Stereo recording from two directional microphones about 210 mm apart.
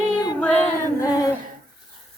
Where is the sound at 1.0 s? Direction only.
15° left (ahead or behind).